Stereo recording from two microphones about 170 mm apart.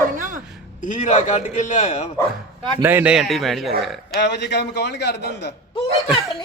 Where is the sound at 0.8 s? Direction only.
45° left (ahead or behind).